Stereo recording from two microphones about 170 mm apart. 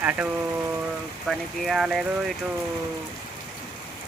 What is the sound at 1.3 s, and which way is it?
Speech, 5° right (ahead or behind).